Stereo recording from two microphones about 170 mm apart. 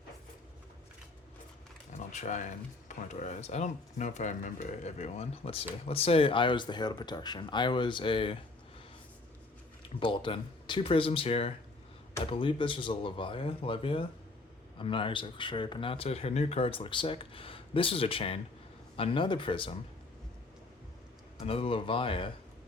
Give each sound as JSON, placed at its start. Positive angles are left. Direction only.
{"t": 1.9, "sound": "a sound", "side_deg": 45}
{"t": 3.1, "sound": "speech", "side_deg": 45}
{"t": 10.0, "sound": "speech", "side_deg": 30}
{"t": 21.4, "sound": "speech", "side_deg": 35}